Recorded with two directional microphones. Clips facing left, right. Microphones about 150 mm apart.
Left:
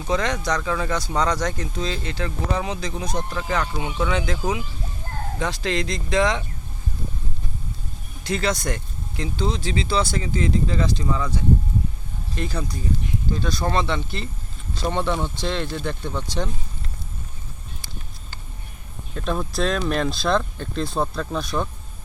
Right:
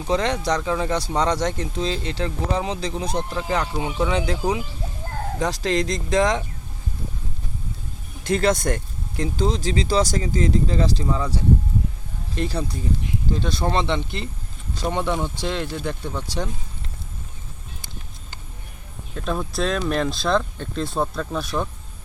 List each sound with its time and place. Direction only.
0.1 s speech: 30° right (ahead or behind)
8.2 s speech: 50° right (ahead or behind); by 16.5 s 10° right (ahead or behind)
19.1 s speech: centre (ahead or behind)